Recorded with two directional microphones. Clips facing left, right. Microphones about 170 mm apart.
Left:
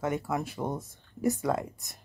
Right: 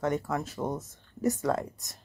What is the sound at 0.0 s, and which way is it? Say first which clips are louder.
Speech: right 1 dB; 10° left (ahead or behind).